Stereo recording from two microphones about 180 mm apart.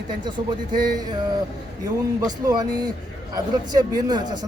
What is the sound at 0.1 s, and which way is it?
Speech, 25° right (ahead or behind).